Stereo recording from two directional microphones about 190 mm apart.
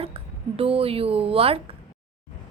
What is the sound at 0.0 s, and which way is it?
A woman's voice, 30° right (ahead or behind).